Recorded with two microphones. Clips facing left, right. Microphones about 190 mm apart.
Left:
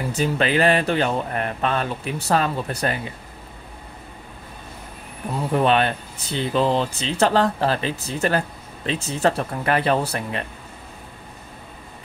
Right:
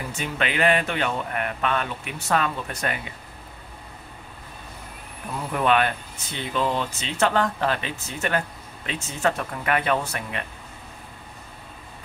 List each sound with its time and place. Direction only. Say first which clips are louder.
0.1 s speech: left 8 dB; 35° left (ahead or behind)
5.5 s speech: left 3 dB; 30° left (ahead or behind)